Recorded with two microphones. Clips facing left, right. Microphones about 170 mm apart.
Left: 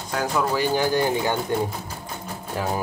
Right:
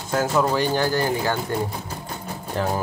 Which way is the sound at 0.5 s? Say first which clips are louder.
Even; 15° left (ahead or behind).